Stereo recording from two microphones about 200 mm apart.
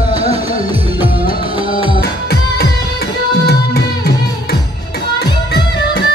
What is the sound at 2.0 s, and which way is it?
Music, 50° left (ahead or behind).